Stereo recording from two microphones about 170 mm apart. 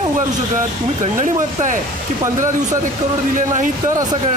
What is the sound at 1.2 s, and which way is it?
Speech, 50° right (ahead or behind).